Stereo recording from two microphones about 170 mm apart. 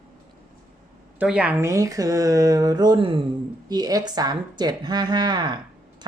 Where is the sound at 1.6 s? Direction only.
20° right (ahead or behind).